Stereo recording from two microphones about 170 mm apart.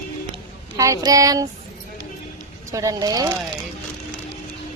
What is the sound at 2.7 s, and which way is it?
Music, 20° right (ahead or behind).